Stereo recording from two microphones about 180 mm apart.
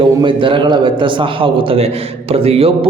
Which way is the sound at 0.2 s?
30° right (ahead or behind).